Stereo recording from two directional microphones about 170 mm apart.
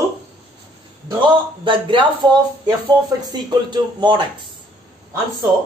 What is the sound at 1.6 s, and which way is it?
Speech, 30° right (ahead or behind).